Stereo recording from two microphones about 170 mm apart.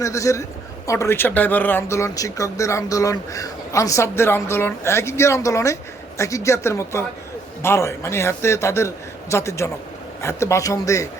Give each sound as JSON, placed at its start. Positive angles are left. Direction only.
{"t": 0.0, "sound": "speech", "side_deg": 20}